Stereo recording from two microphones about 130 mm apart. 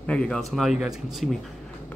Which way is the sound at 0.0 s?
5° left (ahead or behind).